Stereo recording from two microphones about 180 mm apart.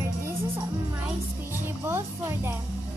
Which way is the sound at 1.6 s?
15° right (ahead or behind).